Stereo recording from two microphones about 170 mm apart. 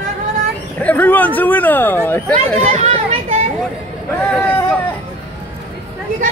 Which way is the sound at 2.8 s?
40° right (ahead or behind).